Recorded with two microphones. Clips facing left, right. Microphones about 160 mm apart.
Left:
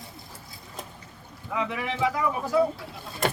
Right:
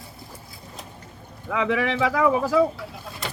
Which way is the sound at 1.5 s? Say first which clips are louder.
Right 6 dB; 90° right.